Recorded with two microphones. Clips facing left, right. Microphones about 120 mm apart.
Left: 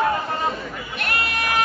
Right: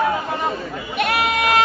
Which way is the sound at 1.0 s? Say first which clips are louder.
Right 6 dB; 90° right.